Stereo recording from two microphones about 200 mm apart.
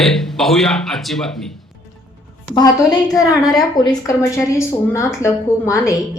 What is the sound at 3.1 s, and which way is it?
Speech, centre (ahead or behind).